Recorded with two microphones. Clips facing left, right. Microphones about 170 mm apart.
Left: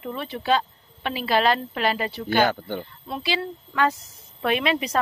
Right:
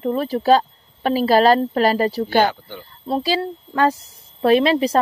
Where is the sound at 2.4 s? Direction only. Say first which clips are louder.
Right 1 dB; 50° left (ahead or behind).